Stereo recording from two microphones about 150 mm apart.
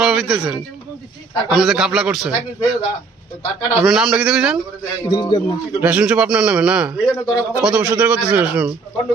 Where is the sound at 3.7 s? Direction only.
5° right (ahead or behind).